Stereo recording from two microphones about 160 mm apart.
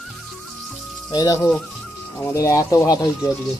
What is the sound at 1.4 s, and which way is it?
Speech, 5° left (ahead or behind).